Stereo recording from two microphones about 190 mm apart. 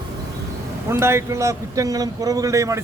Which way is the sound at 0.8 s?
15° right (ahead or behind).